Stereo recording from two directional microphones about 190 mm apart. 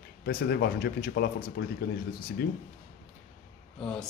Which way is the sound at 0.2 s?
55° left (ahead or behind).